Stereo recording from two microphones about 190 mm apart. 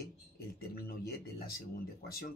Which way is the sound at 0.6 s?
55° left (ahead or behind).